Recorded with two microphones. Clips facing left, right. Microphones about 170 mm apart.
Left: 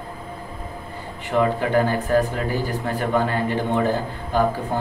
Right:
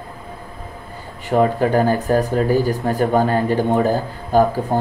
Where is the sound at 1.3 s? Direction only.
40° right (ahead or behind).